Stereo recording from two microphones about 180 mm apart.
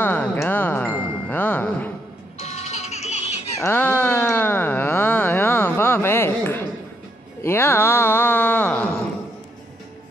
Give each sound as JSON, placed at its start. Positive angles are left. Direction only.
{"t": 0.0, "sound": "music", "side_deg": 10}
{"t": 2.3, "sound": "music", "side_deg": 35}
{"t": 3.5, "sound": "a sound", "side_deg": 15}